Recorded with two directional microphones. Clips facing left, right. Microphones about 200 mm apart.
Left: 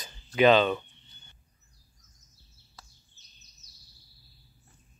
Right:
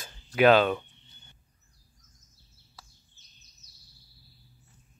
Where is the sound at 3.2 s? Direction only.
50° right (ahead or behind).